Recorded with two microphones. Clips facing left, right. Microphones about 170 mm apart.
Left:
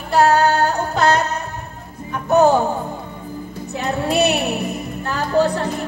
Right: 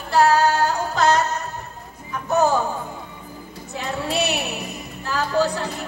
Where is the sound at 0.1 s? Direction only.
60° left (ahead or behind).